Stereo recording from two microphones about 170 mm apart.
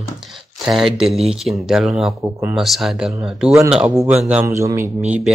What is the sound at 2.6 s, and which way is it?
A man's voice, centre (ahead or behind).